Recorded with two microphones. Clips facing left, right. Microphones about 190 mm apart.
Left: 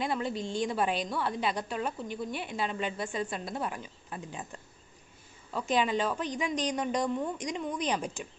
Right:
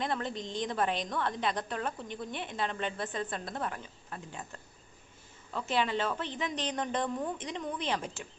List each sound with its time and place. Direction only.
0.0 s a woman's voice: 5° left (ahead or behind)